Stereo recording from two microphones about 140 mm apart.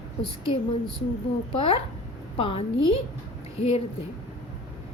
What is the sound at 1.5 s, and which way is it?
A woman's voice, 45° left (ahead or behind).